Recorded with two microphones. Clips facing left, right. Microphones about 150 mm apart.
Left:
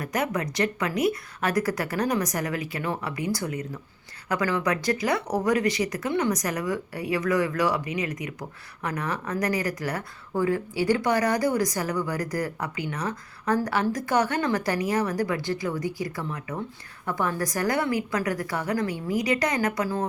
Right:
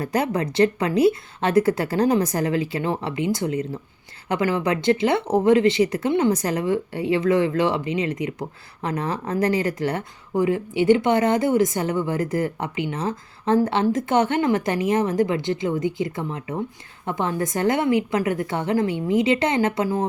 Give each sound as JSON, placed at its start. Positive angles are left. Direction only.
{"t": 0.0, "sound": "speech", "side_deg": -30}